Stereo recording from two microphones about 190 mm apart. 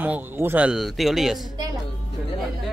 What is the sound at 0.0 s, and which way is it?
A man's voice, 10° right (ahead or behind).